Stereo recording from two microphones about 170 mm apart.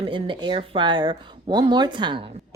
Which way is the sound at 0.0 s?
30° right (ahead or behind).